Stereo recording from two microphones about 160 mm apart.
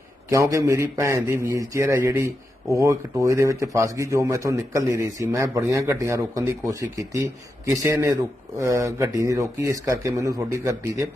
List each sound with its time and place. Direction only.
0.3 s a man's voice: 20° right (ahead or behind)